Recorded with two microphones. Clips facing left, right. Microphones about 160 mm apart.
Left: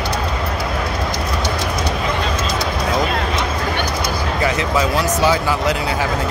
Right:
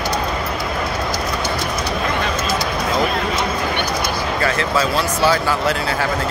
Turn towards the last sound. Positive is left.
turn(degrees=15)  # may be behind; listen again after turning